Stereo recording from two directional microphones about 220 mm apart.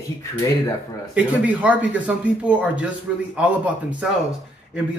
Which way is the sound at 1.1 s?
5° right (ahead or behind).